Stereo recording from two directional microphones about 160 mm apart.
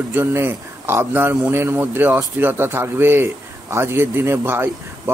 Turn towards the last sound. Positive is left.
turn(degrees=-15)  # may be behind; listen again after turning